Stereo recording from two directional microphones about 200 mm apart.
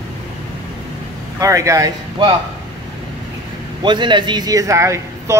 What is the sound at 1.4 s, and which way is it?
Speech, 15° right (ahead or behind).